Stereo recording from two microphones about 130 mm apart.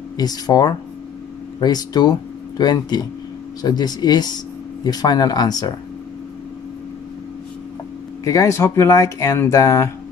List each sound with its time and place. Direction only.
0.2 s speech: 30° left (ahead or behind)
8.2 s speech: 25° left (ahead or behind)